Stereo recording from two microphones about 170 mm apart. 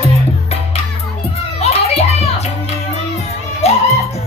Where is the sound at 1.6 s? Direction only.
40° left (ahead or behind).